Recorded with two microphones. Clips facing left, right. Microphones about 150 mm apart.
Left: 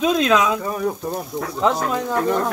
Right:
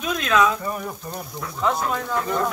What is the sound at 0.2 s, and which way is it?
Speech, 90° left.